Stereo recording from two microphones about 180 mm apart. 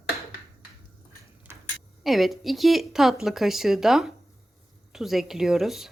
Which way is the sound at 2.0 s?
Centre (ahead or behind).